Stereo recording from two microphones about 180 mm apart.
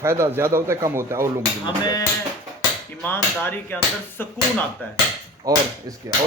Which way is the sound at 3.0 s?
10° left (ahead or behind).